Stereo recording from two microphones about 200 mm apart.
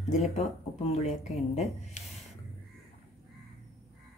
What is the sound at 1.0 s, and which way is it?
Speech, 30° left (ahead or behind).